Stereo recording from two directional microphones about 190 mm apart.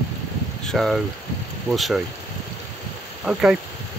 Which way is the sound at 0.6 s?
Centre (ahead or behind).